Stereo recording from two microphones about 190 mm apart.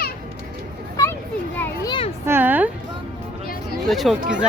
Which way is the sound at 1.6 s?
20° left (ahead or behind).